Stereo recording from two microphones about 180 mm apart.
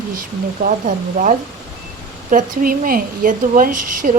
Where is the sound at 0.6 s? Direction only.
45° right (ahead or behind).